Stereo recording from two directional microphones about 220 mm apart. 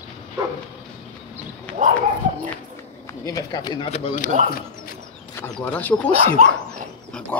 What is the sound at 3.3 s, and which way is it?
Speech, 15° left (ahead or behind).